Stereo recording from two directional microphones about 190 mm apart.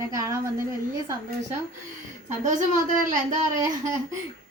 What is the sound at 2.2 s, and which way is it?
Speech, 40° right (ahead or behind).